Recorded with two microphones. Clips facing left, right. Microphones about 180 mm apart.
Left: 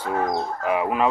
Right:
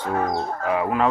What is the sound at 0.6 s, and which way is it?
Speech, 15° left (ahead or behind).